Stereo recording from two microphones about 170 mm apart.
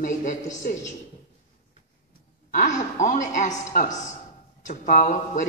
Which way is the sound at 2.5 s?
45° left (ahead or behind).